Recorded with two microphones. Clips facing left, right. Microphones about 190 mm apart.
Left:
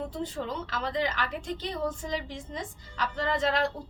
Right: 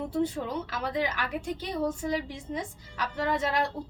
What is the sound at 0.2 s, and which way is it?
A woman's voice, 10° right (ahead or behind).